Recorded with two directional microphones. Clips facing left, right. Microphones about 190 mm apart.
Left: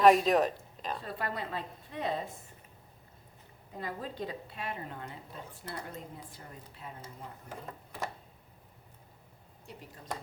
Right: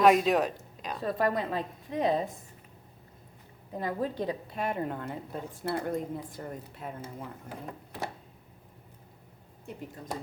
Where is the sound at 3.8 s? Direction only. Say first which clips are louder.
Right 7 dB; 45° right (ahead or behind).